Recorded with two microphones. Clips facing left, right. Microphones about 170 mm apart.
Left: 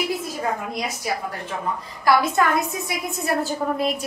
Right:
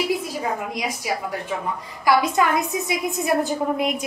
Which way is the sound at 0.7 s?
10° right (ahead or behind).